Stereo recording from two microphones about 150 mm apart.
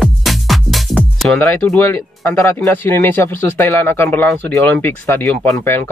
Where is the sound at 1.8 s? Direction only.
15° left (ahead or behind).